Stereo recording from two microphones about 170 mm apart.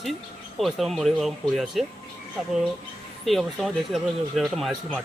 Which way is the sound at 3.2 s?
Centre (ahead or behind).